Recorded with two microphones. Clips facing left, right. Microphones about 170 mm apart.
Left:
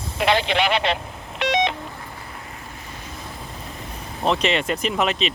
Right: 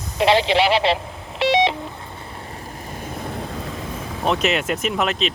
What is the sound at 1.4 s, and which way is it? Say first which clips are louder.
Telephone dialing: right 4 dB; 30° right (ahead or behind).